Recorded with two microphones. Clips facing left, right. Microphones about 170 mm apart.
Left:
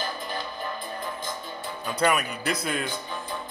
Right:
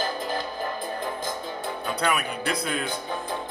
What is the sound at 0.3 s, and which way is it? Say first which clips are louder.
Music: right 4 dB; 45° right (ahead or behind).